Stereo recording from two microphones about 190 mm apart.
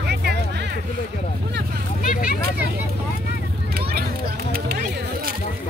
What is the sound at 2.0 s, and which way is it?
Vehicle, 45° left (ahead or behind).